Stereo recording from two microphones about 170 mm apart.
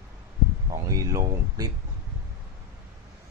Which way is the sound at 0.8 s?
20° right (ahead or behind).